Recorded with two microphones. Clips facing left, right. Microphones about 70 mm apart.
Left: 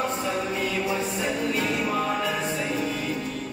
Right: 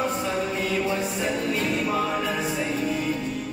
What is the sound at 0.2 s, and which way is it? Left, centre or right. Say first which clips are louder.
Music: right 1 dB; centre.